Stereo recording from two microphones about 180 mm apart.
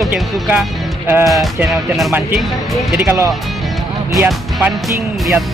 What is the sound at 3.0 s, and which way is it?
Speech, 15° right (ahead or behind).